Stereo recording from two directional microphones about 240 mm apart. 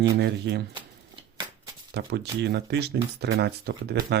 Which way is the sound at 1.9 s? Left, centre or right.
Right.